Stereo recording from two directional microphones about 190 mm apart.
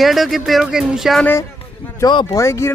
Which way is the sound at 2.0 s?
25° left (ahead or behind).